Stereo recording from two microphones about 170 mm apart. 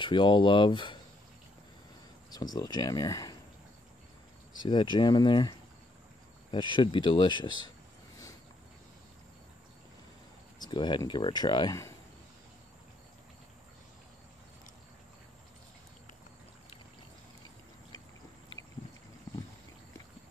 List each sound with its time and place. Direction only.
0.0 s speech: 30° left (ahead or behind)
2.3 s speech: 25° left (ahead or behind)
4.6 s speech: 30° left (ahead or behind)
6.5 s speech: 30° left (ahead or behind)
10.6 s speech: 25° left (ahead or behind)